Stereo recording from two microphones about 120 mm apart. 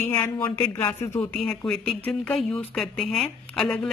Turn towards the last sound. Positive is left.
turn(degrees=5)  # may be behind; listen again after turning